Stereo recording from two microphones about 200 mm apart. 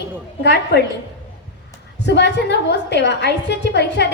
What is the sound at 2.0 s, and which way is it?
A woman's voice, 60° left (ahead or behind).